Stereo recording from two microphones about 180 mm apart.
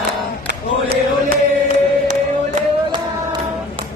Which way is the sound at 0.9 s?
55° right (ahead or behind).